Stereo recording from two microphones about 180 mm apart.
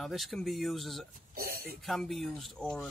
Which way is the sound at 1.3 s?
55° right (ahead or behind).